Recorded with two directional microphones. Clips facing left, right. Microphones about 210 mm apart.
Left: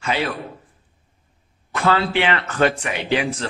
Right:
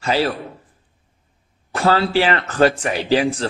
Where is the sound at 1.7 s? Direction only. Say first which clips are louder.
Right 2 dB; 35° right (ahead or behind).